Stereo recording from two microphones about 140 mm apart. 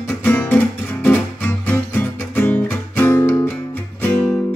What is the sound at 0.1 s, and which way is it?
Music, 15° left (ahead or behind).